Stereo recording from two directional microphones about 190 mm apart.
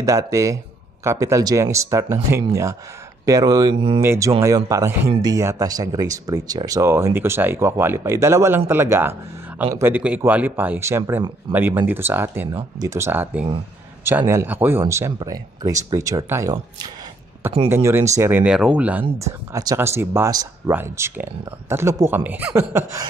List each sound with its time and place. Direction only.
0.0 s speech: 15° right (ahead or behind)
4.0 s speech: 10° right (ahead or behind)